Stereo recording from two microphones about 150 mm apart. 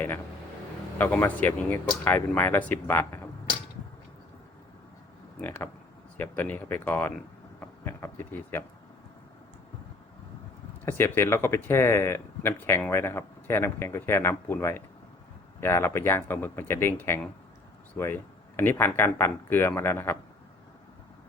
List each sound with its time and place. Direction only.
0.9 s speech: 15° left (ahead or behind)
5.4 s speech: 10° left (ahead or behind)
10.8 s speech: 15° left (ahead or behind)